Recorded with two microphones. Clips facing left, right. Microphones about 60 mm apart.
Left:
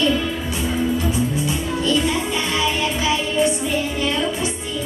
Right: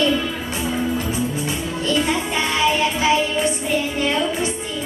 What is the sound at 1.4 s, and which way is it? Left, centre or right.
Music, right.